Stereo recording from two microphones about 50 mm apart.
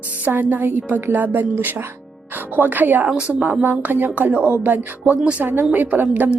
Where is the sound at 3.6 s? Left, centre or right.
Right.